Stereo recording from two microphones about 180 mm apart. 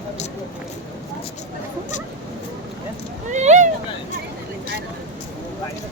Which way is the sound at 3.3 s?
40° right (ahead or behind).